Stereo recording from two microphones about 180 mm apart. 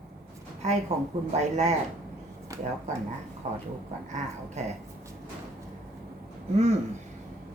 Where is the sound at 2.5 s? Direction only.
20° right (ahead or behind).